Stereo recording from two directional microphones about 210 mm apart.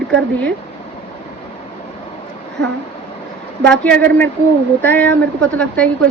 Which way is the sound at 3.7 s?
5° left (ahead or behind).